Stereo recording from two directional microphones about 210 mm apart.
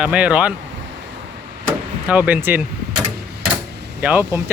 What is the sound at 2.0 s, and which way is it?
Speech, 5° right (ahead or behind).